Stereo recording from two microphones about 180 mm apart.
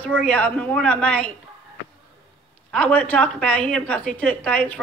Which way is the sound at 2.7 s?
5° left (ahead or behind).